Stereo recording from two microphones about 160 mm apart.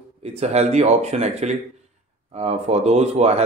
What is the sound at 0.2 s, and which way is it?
Speech, 40° right (ahead or behind).